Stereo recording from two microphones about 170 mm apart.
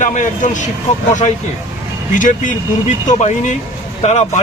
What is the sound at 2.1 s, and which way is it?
Speech, 50° left (ahead or behind).